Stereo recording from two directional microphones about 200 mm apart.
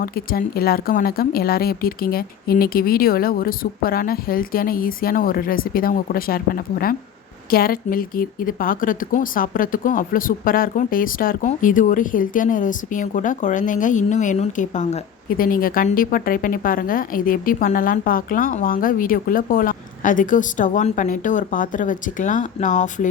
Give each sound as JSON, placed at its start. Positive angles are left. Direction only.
{"t": 0.0, "sound": "speech", "side_deg": 45}